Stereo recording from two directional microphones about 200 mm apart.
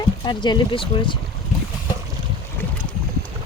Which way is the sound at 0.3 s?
20° left (ahead or behind).